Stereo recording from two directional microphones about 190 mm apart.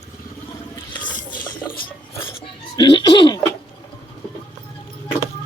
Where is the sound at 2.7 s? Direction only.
25° left (ahead or behind).